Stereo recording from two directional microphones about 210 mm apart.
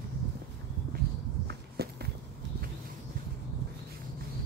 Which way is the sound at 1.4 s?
50° right (ahead or behind).